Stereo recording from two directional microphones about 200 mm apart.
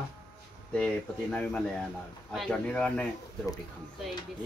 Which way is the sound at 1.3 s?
5° left (ahead or behind).